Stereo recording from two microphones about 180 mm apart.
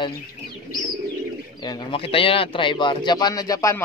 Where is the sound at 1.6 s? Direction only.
25° left (ahead or behind).